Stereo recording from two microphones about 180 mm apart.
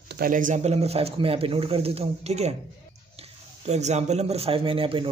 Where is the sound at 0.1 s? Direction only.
50° right (ahead or behind).